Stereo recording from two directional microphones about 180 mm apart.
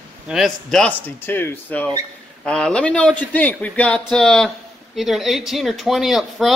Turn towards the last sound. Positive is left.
turn(degrees=0)  # may be behind; listen again after turning